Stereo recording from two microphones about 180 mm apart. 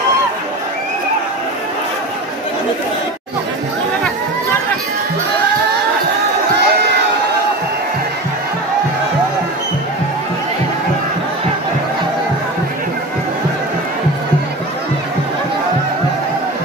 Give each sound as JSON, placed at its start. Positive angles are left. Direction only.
{"t": 6.5, "sound": "crowd", "side_deg": -65}